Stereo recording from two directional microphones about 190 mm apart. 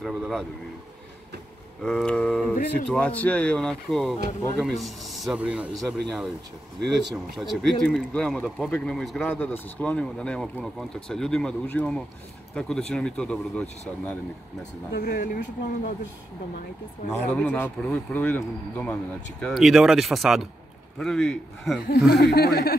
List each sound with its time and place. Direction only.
0.0 s speech: centre (ahead or behind)
1.8 s speech: 5° left (ahead or behind)
15.0 s speech: 50° left (ahead or behind)
17.1 s speech: 5° left (ahead or behind)
21.8 s speech: 55° left (ahead or behind)